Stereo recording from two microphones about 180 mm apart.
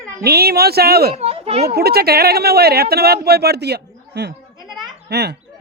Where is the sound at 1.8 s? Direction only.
60° right (ahead or behind).